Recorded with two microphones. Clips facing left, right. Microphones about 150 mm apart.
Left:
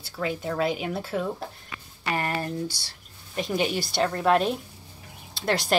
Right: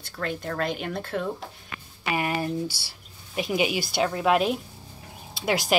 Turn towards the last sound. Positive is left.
turn(degrees=0)  # may be behind; listen again after turning